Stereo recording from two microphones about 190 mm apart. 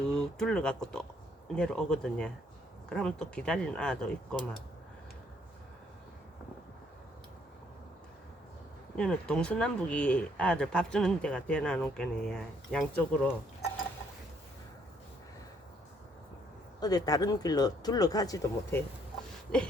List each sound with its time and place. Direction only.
0.0 s speech: 5° left (ahead or behind)
9.0 s speech: 5° left (ahead or behind)
16.8 s speech: 20° left (ahead or behind)